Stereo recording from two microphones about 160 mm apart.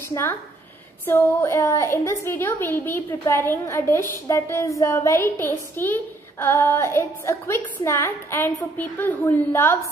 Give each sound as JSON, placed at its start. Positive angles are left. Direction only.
{"t": 0.1, "sound": "a woman's voice", "side_deg": 15}